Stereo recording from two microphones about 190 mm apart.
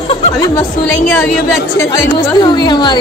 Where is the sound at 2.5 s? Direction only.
25° left (ahead or behind).